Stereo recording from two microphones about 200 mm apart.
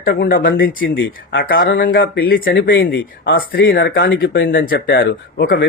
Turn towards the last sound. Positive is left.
turn(degrees=55)  # may be behind; listen again after turning